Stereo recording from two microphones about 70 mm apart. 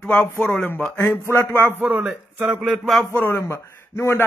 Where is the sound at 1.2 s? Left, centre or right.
Left.